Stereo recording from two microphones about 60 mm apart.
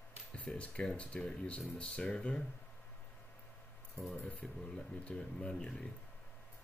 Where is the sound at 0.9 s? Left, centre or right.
Centre.